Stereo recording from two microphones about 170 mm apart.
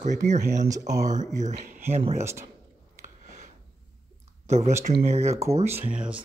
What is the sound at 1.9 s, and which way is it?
Speech, 40° right (ahead or behind).